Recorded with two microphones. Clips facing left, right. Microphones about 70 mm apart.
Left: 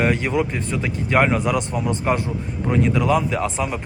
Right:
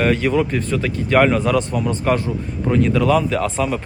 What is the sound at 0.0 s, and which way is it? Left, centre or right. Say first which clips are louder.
Speech: right 3 dB; left.